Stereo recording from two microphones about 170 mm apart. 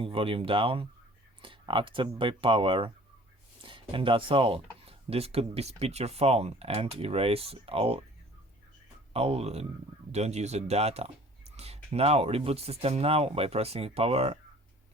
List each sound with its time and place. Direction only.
0.0 s speech: 30° right (ahead or behind)
9.1 s speech: 35° right (ahead or behind)